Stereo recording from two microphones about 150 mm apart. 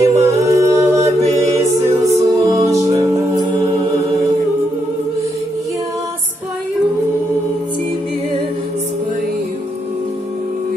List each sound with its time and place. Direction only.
0.0 s a capella: 20° right (ahead or behind)
1.4 s music: 20° right (ahead or behind)